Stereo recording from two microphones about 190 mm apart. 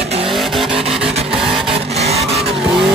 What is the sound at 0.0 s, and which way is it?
Vehicle, 30° right (ahead or behind).